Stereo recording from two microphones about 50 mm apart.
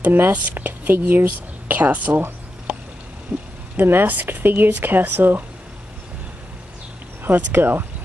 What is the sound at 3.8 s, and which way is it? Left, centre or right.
Speech, right.